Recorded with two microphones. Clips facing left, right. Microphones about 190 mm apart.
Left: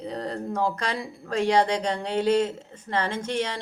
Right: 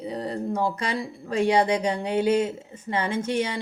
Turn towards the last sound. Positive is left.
turn(degrees=-10)  # may be behind; listen again after turning